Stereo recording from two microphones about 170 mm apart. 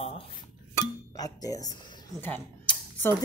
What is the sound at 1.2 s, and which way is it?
Speech, 20° left (ahead or behind).